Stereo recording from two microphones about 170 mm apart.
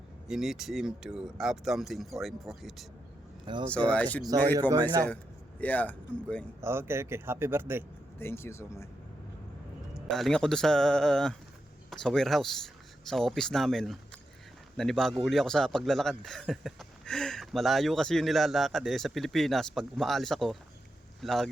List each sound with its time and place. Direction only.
0.3 s a man's voice: centre (ahead or behind)
3.4 s speech: 25° right (ahead or behind)
3.7 s speech: 5° left (ahead or behind)
5.5 s speech: 10° left (ahead or behind)
6.6 s speech: 15° right (ahead or behind)
8.2 s speech: 15° left (ahead or behind)
10.1 s a man's voice: centre (ahead or behind)